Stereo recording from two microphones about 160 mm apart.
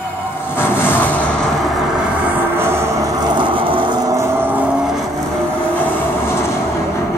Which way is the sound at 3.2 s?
30° right (ahead or behind).